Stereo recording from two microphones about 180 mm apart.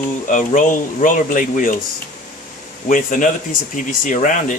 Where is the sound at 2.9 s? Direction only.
45° left (ahead or behind).